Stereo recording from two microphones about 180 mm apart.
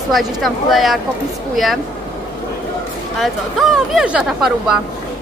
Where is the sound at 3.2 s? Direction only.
Centre (ahead or behind).